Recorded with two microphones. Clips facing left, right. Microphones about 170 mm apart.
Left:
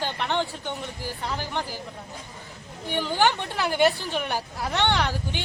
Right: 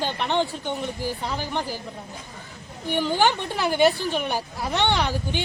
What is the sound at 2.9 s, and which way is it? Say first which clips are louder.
Speech: right 2 dB; 15° right (ahead or behind).